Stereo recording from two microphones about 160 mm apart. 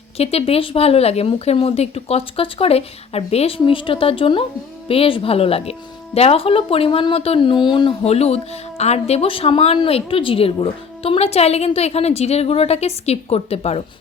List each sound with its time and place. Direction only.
0.2 s a woman's voice: 40° left (ahead or behind)